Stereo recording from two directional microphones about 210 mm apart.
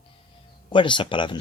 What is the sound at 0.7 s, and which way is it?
Speech, 25° left (ahead or behind).